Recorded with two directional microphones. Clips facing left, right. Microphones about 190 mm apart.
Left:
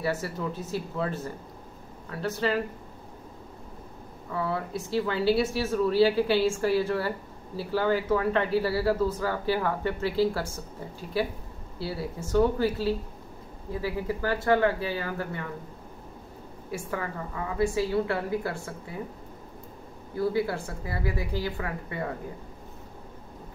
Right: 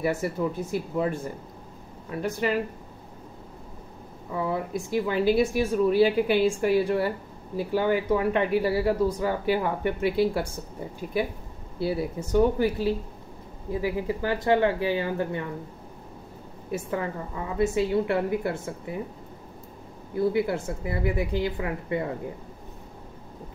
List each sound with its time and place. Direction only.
0.0 s speech: 15° right (ahead or behind)
4.3 s speech: 15° right (ahead or behind)
16.7 s a woman's voice: 25° right (ahead or behind)
20.2 s a woman's voice: 20° right (ahead or behind)